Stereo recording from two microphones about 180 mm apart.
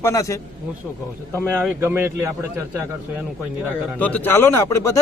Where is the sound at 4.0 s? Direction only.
10° left (ahead or behind).